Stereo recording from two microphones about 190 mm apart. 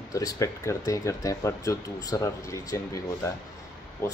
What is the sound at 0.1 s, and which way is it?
Speech, 15° left (ahead or behind).